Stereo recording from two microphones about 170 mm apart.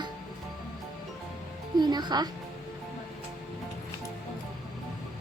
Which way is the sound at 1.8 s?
25° right (ahead or behind).